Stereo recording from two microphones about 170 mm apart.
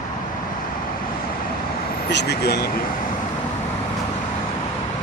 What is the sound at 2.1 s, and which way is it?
Speech, 85° left.